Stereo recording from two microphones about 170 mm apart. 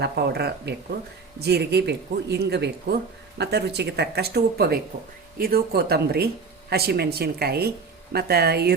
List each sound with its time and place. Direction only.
0.0 s speech: 75° right (ahead or behind)